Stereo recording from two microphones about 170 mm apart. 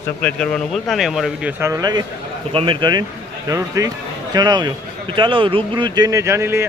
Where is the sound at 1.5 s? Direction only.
15° right (ahead or behind).